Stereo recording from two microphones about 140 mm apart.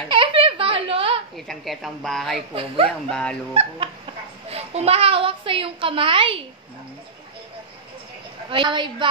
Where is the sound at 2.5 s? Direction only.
40° right (ahead or behind).